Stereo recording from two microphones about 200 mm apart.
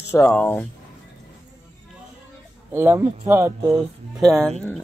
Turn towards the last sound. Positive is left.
turn(degrees=5)  # may be behind; listen again after turning